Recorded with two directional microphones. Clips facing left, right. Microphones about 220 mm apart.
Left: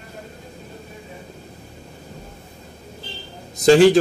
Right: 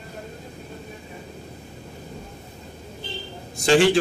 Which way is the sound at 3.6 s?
40° left (ahead or behind).